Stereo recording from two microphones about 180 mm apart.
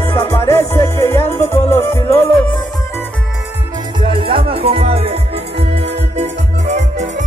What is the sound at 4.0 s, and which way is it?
Music, 30° right (ahead or behind).